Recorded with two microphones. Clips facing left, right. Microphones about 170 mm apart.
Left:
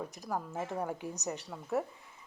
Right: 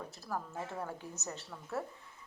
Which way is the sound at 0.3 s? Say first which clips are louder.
Left 3 dB; 15° left (ahead or behind).